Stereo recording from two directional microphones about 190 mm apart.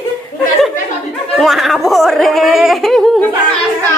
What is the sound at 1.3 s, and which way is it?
Speech, centre (ahead or behind).